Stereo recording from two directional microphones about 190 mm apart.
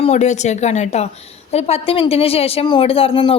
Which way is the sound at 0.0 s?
35° left (ahead or behind).